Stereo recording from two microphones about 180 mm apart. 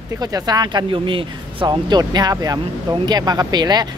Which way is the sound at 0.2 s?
20° right (ahead or behind).